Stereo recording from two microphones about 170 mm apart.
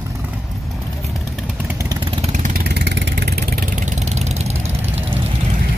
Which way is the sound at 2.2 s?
45° right (ahead or behind).